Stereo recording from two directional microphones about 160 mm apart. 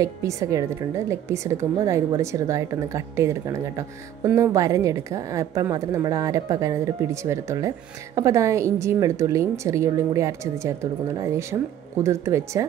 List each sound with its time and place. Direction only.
0.0 s a woman's voice: 20° right (ahead or behind)